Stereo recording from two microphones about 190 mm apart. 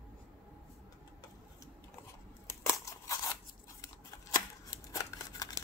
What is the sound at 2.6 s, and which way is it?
Scissors, 15° left (ahead or behind).